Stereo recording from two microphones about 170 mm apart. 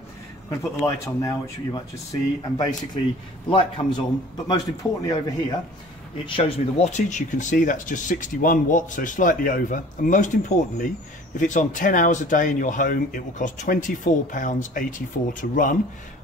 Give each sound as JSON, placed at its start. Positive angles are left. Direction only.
{"t": 0.5, "sound": "a man's voice", "side_deg": 15}
{"t": 5.0, "sound": "speech", "side_deg": 20}
{"t": 6.2, "sound": "speech", "side_deg": 35}